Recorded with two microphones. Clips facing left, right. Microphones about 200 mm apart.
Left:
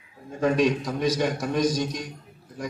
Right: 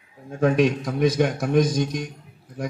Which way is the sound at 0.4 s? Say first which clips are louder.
Right 2 dB; 55° right (ahead or behind).